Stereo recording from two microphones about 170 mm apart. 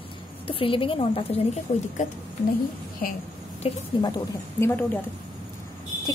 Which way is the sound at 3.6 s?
35° left (ahead or behind).